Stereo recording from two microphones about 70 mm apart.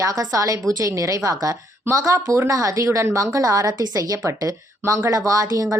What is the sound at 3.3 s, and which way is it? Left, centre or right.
A woman's voice, right.